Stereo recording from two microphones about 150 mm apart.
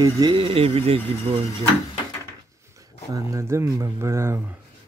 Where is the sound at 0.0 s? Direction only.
30° right (ahead or behind).